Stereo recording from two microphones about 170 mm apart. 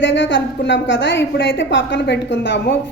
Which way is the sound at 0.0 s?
90° left.